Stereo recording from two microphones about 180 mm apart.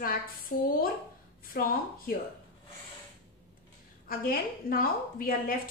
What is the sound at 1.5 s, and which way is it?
Speech, 55° left (ahead or behind).